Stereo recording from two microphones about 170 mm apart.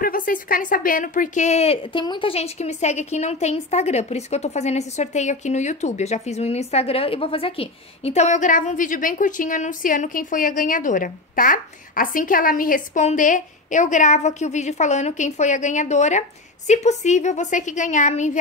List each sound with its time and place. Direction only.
0.0 s a woman's voice: 55° left (ahead or behind)